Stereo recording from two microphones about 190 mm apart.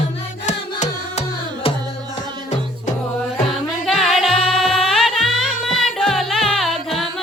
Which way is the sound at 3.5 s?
Centre (ahead or behind).